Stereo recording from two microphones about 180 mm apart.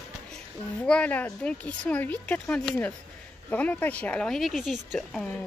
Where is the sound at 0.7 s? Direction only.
5° left (ahead or behind).